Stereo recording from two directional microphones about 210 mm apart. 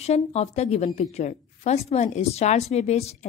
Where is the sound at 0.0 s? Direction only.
30° left (ahead or behind).